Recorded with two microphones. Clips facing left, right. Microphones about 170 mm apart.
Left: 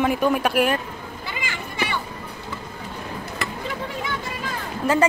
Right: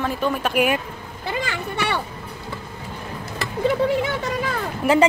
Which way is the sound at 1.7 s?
65° right (ahead or behind).